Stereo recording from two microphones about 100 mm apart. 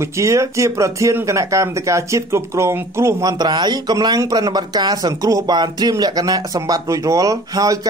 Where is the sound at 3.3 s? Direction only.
45° right (ahead or behind).